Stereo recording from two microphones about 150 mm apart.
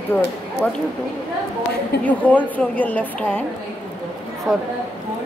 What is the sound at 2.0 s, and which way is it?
A woman's voice, 10° left (ahead or behind).